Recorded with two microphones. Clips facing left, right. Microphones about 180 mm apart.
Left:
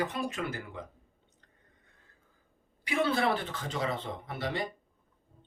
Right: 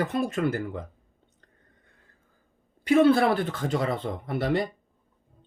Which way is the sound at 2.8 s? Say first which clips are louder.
Right 10 dB; 50° right (ahead or behind).